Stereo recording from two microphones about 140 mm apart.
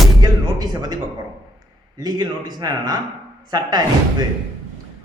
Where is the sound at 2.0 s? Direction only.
30° right (ahead or behind).